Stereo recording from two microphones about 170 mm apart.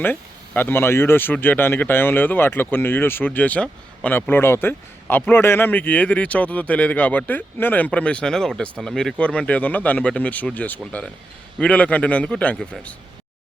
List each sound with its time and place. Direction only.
0.0 s speech: 10° left (ahead or behind)